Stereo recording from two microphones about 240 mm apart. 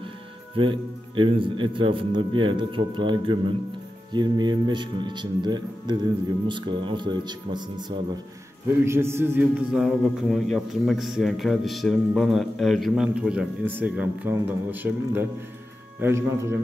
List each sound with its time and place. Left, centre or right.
0.6 s a man's voice: right
8.8 s a man's voice: centre